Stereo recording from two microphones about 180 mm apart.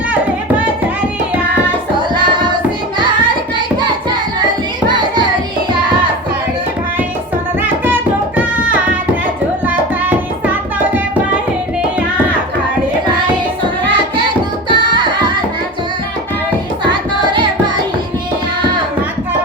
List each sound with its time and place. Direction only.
2.0 s music: 25° right (ahead or behind)
4.9 s music: 25° right (ahead or behind)
8.4 s music: 10° right (ahead or behind)
14.7 s music: 25° right (ahead or behind)